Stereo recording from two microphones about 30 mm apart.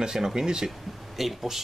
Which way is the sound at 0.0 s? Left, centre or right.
Right.